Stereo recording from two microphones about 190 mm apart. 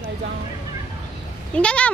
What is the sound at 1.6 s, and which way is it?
Speech, 5° left (ahead or behind).